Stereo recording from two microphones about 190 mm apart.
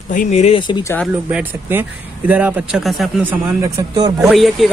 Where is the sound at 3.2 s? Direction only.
20° right (ahead or behind).